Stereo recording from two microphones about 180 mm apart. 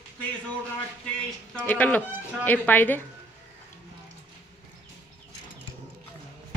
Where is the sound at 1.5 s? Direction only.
10° left (ahead or behind).